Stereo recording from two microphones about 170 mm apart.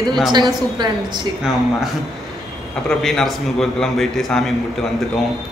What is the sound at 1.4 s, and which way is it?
Speech, centre (ahead or behind).